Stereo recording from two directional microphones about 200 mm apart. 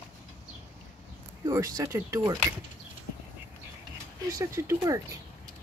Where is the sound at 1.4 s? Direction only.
20° right (ahead or behind).